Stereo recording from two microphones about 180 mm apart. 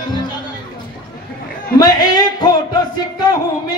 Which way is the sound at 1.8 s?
20° left (ahead or behind).